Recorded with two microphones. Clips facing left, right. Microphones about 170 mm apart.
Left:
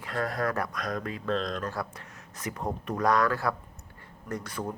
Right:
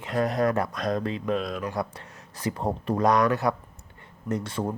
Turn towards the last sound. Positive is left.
turn(degrees=-25)  # may be behind; listen again after turning